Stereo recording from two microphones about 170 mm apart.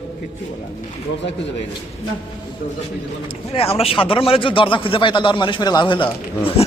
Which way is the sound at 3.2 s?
35° left (ahead or behind).